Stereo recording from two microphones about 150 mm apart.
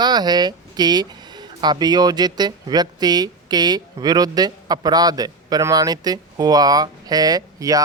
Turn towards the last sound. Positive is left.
turn(degrees=-25)  # may be behind; listen again after turning